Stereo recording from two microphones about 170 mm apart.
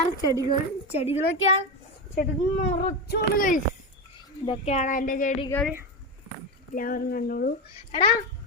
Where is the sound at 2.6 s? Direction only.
45° left (ahead or behind).